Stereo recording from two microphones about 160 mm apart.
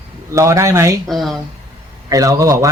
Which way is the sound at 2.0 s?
20° right (ahead or behind).